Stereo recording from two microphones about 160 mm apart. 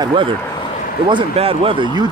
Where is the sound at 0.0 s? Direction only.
30° right (ahead or behind).